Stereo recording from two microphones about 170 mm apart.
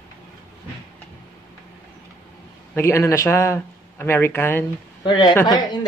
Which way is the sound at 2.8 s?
15° left (ahead or behind).